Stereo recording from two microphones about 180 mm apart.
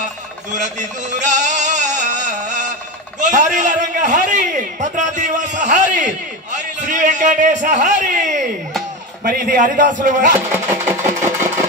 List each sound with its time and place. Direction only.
0.6 s music: 45° right (ahead or behind)
3.2 s a man's voice: 45° right (ahead or behind)
10.5 s engine: 10° right (ahead or behind)